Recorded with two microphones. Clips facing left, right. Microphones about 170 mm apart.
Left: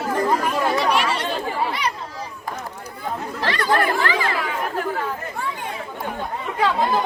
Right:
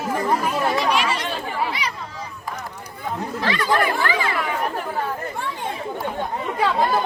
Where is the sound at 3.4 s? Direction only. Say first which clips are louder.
Even; 55° left (ahead or behind).